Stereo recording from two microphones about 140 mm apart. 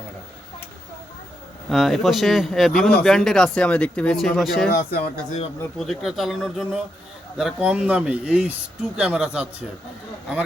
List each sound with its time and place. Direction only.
1.7 s speech: centre (ahead or behind)
4.7 s speech: 90° left
5.8 s speech: centre (ahead or behind)